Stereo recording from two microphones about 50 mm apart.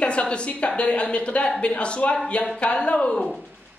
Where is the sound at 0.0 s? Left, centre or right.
Left.